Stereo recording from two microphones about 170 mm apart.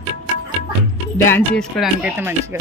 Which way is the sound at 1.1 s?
15° left (ahead or behind).